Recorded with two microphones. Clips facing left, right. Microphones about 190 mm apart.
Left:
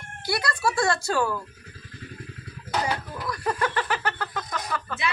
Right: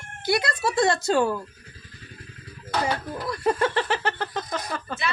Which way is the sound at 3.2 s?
25° right (ahead or behind).